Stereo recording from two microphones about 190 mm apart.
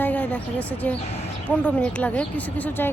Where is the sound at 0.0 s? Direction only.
10° left (ahead or behind).